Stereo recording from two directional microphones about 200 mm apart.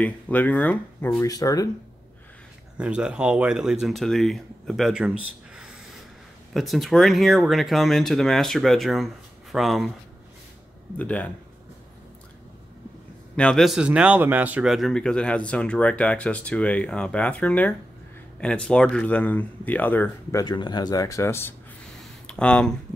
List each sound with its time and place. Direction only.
0.0 s speech: 10° left (ahead or behind)
2.8 s speech: 5° right (ahead or behind)
11.0 s speech: 10° left (ahead or behind)
13.4 s speech: 5° left (ahead or behind)